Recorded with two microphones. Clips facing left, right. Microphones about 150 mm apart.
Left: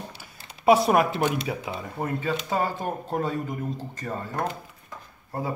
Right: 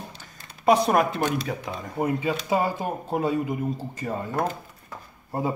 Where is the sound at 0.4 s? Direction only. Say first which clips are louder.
Left 1 dB; 25° left (ahead or behind).